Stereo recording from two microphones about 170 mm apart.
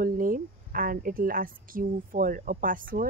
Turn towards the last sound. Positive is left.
turn(degrees=-55)  # may be behind; listen again after turning